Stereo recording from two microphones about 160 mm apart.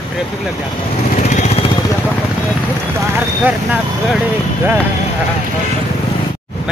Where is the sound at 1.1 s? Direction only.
50° left (ahead or behind).